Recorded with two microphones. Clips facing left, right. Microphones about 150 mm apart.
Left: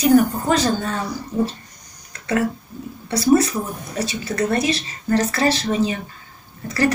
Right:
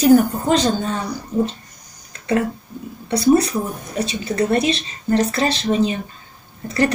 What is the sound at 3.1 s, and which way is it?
Speech, 20° right (ahead or behind).